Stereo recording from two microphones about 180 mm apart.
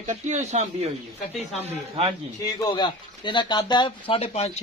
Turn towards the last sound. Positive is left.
turn(degrees=35)  # may be behind; listen again after turning